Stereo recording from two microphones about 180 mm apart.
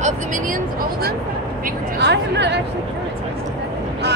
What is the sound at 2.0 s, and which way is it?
Speech, 70° right (ahead or behind).